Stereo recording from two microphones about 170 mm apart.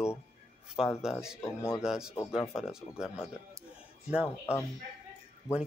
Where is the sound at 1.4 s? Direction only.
15° left (ahead or behind).